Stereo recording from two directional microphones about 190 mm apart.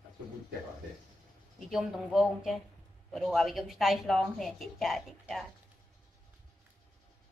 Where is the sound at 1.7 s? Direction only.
Centre (ahead or behind).